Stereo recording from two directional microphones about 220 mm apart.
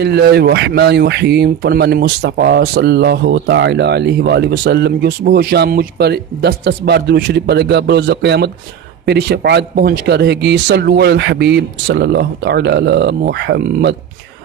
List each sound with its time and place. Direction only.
0.0 s speech: 50° right (ahead or behind)